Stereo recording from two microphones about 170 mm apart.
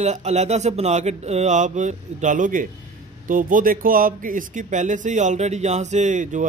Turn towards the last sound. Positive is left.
turn(degrees=-45)  # may be behind; listen again after turning